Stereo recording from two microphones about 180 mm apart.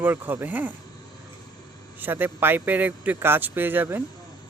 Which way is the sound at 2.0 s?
10° right (ahead or behind).